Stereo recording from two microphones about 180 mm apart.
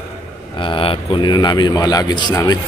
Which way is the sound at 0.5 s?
30° left (ahead or behind).